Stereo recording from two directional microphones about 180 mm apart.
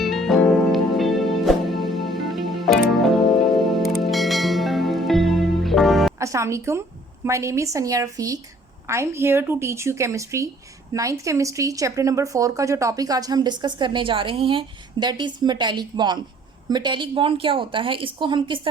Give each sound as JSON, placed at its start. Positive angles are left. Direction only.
{"t": 0.0, "sound": "music", "side_deg": 0}
{"t": 6.1, "sound": "a woman's voice", "side_deg": -15}